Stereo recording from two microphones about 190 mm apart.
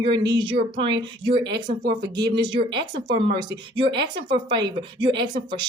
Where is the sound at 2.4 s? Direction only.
25° right (ahead or behind).